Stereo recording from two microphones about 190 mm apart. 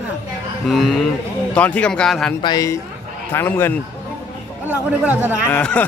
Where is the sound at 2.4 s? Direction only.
20° left (ahead or behind).